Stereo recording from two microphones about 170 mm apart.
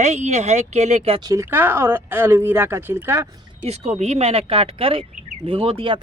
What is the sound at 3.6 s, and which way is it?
Speech, 40° right (ahead or behind).